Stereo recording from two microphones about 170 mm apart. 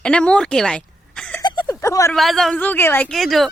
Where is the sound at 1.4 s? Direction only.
20° left (ahead or behind).